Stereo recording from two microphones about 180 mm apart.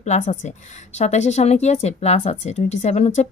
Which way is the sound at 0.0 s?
40° left (ahead or behind).